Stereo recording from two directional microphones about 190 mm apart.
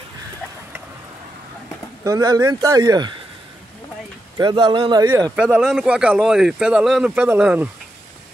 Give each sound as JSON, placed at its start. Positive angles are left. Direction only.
{"t": 2.0, "sound": "speech", "side_deg": -20}
{"t": 4.4, "sound": "speech", "side_deg": -25}
{"t": 5.3, "sound": "speech", "side_deg": -5}